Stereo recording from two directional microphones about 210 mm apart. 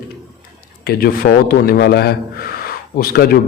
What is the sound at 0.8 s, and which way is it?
A man's voice, 45° left (ahead or behind).